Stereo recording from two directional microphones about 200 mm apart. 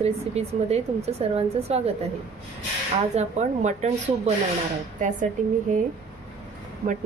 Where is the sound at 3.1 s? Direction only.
35° right (ahead or behind).